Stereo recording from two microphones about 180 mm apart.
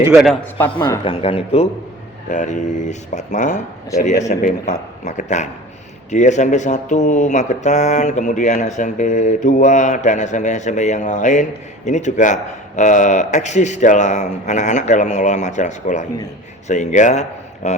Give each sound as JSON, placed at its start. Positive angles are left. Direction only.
{"t": 0.1, "sound": "a man's voice", "side_deg": 0}
{"t": 0.7, "sound": "speech", "side_deg": 25}
{"t": 2.3, "sound": "speech", "side_deg": 45}